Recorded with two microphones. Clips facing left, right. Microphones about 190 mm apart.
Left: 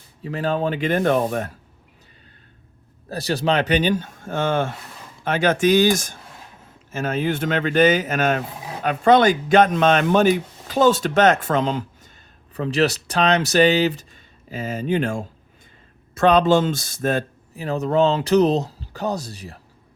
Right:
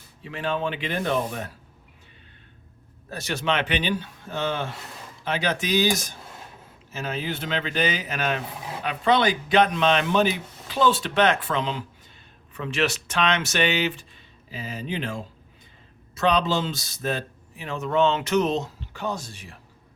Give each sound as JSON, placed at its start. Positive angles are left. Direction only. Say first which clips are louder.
{"t": 0.2, "sound": "speech", "louder": "left 5 dB", "side_deg": 40}
{"t": 3.1, "sound": "speech", "louder": "left 5 dB", "side_deg": 35}